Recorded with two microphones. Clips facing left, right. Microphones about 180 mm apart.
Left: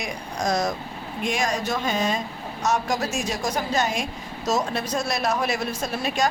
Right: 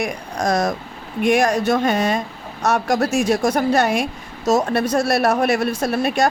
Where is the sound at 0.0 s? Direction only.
60° right (ahead or behind).